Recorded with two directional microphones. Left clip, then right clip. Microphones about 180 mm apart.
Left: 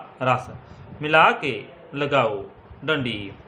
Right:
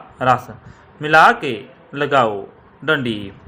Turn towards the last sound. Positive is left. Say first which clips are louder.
# right 6 dB
turn(degrees=-30)  # may be behind; listen again after turning